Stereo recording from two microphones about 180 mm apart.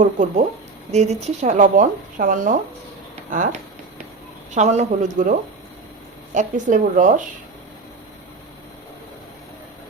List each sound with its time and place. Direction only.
0.0 s speech: 45° right (ahead or behind)
4.5 s speech: 40° right (ahead or behind)
6.3 s speech: 45° right (ahead or behind)